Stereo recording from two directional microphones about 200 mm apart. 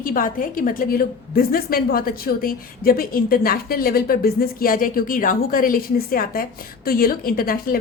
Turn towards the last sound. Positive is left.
turn(degrees=45)  # may be behind; listen again after turning